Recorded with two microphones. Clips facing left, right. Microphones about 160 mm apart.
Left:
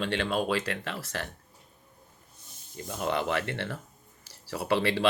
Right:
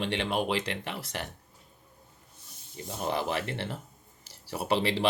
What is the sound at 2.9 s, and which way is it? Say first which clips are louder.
Speech: left 2 dB; 25° right (ahead or behind).